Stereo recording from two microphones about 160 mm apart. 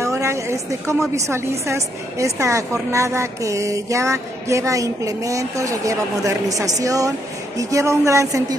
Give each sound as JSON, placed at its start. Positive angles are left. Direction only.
{"t": 0.0, "sound": "a woman's voice", "side_deg": -15}